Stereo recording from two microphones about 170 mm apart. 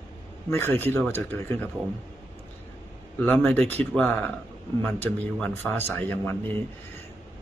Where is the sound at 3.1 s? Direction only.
10° left (ahead or behind).